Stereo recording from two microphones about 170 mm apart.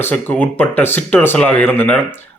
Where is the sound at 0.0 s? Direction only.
10° left (ahead or behind).